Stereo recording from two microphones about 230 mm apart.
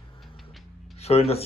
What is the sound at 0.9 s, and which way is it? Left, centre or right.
Speech, left.